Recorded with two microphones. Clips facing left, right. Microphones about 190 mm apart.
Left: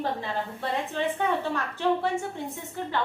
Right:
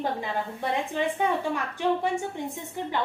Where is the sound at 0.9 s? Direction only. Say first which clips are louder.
Even; 15° right (ahead or behind).